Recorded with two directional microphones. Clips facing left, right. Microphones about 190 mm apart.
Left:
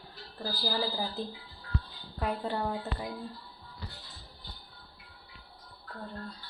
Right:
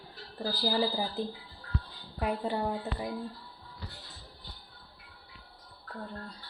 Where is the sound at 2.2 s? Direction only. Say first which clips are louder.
Right 1 dB; 10° right (ahead or behind).